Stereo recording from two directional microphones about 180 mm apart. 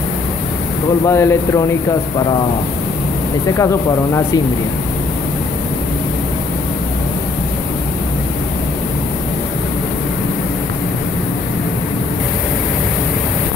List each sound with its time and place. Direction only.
1.0 s speech: 15° left (ahead or behind)
3.5 s speech: 15° left (ahead or behind)